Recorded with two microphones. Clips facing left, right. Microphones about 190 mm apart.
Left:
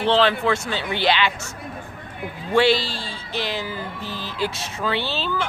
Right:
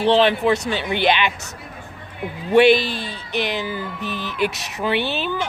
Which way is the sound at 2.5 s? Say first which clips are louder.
Right 5 dB; 20° right (ahead or behind).